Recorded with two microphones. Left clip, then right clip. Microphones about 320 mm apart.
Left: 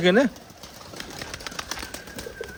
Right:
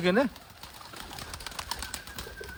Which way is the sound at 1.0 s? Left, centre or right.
Right.